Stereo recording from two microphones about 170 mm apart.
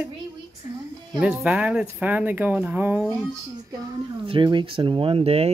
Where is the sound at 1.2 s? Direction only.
5° right (ahead or behind).